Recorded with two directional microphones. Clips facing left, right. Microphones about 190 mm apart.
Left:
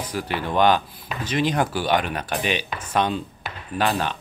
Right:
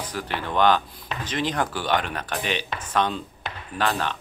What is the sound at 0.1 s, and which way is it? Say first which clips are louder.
Speech: left 4 dB; 10° left (ahead or behind).